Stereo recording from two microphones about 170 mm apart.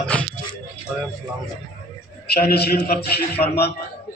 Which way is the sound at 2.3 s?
70° left (ahead or behind).